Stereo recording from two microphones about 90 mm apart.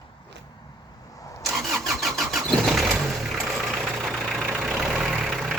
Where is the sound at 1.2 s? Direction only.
40° left (ahead or behind).